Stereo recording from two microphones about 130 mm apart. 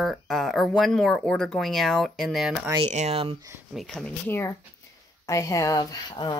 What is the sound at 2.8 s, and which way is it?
Speech, 60° right (ahead or behind).